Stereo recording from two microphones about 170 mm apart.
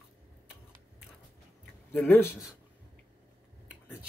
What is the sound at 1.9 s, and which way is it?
Speech, 10° left (ahead or behind).